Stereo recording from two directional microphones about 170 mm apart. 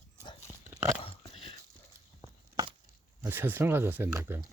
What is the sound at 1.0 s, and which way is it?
Biting, 30° left (ahead or behind).